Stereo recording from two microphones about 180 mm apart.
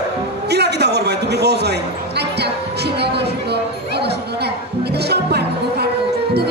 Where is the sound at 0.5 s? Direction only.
65° right (ahead or behind).